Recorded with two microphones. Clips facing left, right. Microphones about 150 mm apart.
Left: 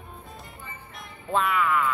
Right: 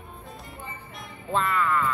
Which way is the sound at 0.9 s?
Centre (ahead or behind).